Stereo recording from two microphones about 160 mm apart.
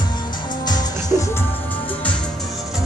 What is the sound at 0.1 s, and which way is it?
Music, 25° left (ahead or behind).